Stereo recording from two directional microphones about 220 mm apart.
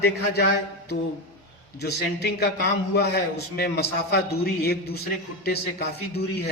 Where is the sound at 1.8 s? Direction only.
45° left (ahead or behind).